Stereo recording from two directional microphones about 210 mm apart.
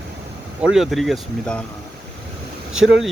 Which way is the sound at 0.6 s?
Centre (ahead or behind).